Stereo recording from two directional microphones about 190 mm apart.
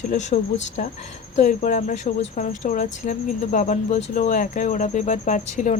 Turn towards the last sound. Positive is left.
turn(degrees=40)  # may be behind; listen again after turning